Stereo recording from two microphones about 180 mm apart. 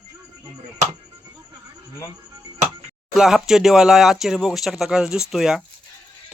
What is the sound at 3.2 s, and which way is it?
Speech, 5° right (ahead or behind).